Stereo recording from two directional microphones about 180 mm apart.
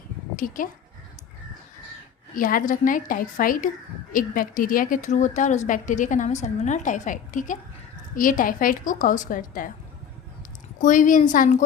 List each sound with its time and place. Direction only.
0.3 s speech: 50° left (ahead or behind)
2.3 s speech: 50° left (ahead or behind)
10.8 s a woman's voice: 45° left (ahead or behind)